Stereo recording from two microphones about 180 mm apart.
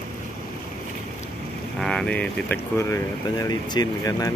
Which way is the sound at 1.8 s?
5° left (ahead or behind).